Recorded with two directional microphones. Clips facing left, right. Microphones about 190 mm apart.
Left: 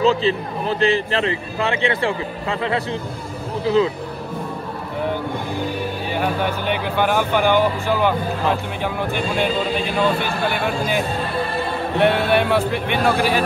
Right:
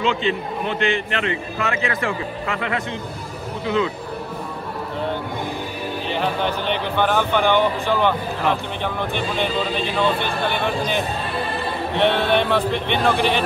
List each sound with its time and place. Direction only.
0.0 s a man's voice: 35° left (ahead or behind)
6.0 s speech: 10° left (ahead or behind)
9.9 s speech: 10° left (ahead or behind)